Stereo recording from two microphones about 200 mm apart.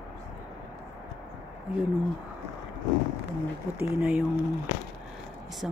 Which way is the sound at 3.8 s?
5° right (ahead or behind).